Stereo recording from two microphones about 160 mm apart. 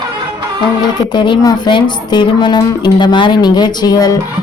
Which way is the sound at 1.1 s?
30° left (ahead or behind).